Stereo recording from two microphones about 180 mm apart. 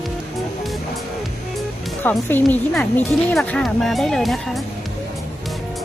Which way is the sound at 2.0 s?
10° left (ahead or behind).